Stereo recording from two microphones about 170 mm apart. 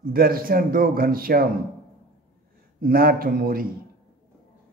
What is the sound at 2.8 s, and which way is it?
Speech, 60° right (ahead or behind).